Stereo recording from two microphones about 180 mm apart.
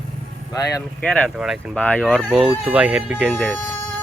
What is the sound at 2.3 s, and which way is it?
Speech, 5° right (ahead or behind).